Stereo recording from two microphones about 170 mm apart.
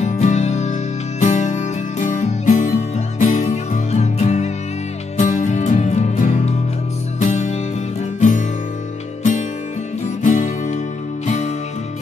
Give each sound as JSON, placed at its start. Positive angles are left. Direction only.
{"t": 0.0, "sound": "music", "side_deg": 40}
{"t": 8.2, "sound": "guitar", "side_deg": 50}
{"t": 10.2, "sound": "music", "side_deg": 50}